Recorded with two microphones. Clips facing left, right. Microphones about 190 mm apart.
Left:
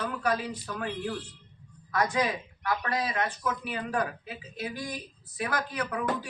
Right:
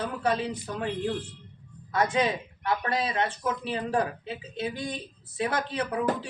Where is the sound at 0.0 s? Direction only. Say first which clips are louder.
Right 2 dB; 25° right (ahead or behind).